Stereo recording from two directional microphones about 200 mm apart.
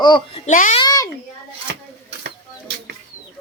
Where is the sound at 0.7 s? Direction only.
20° left (ahead or behind).